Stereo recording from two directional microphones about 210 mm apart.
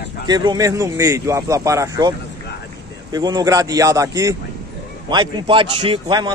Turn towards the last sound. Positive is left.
turn(degrees=-20)  # may be behind; listen again after turning